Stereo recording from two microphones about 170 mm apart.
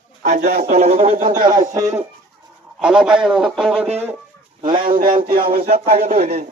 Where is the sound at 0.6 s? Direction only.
40° right (ahead or behind).